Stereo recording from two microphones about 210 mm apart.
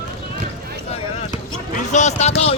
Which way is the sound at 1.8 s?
35° left (ahead or behind).